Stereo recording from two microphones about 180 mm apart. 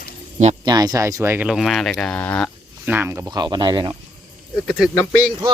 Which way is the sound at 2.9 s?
10° right (ahead or behind).